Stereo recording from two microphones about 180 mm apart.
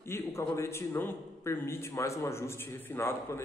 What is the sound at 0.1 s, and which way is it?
A man's voice, 15° left (ahead or behind).